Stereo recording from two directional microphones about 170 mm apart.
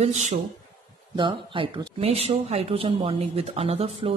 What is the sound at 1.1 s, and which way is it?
Speech, 30° right (ahead or behind).